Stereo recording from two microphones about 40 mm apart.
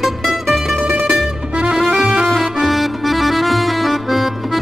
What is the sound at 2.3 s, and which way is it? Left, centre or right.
Accordion, centre.